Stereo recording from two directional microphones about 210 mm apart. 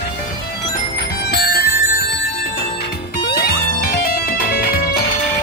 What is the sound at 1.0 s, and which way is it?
Music, 50° left (ahead or behind).